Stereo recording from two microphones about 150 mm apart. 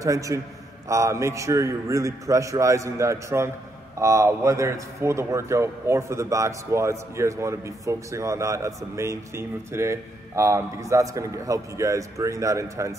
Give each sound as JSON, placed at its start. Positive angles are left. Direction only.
{"t": 0.0, "sound": "a man's voice", "side_deg": -20}